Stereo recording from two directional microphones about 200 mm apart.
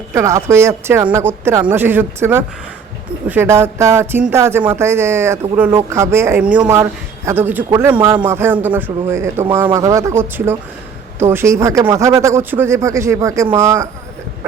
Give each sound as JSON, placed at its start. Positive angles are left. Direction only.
{"t": 0.1, "sound": "speech", "side_deg": -15}